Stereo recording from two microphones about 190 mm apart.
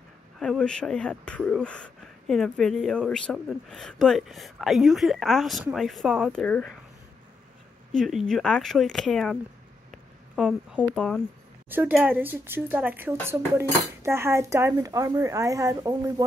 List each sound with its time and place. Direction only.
0.4 s speech: 5° left (ahead or behind)
7.9 s speech: centre (ahead or behind)
9.8 s a sound: 5° right (ahead or behind)
11.0 s speech: 5° left (ahead or behind)
11.7 s speech: 10° right (ahead or behind)